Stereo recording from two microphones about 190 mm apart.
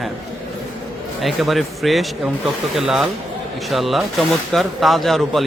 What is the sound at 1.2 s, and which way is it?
A man's voice, centre (ahead or behind).